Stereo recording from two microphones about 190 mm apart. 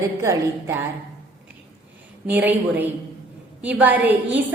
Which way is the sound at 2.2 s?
10° right (ahead or behind).